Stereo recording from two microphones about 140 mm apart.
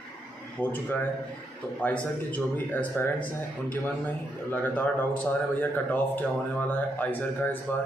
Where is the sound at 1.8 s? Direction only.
10° left (ahead or behind).